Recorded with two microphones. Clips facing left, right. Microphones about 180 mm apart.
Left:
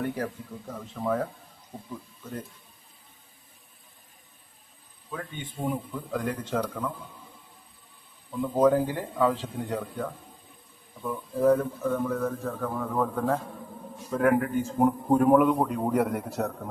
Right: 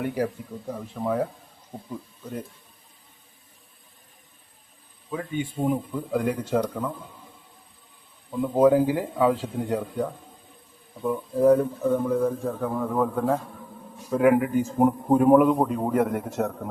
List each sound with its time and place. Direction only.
0.2 s speech: 10° right (ahead or behind)
5.1 s speech: 10° right (ahead or behind)
8.4 s a man's voice: 10° right (ahead or behind)